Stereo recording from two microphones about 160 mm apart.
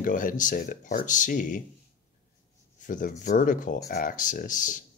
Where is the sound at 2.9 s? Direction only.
55° left (ahead or behind).